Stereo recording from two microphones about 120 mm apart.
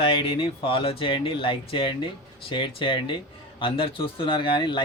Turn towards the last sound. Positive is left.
turn(degrees=40)  # may be behind; listen again after turning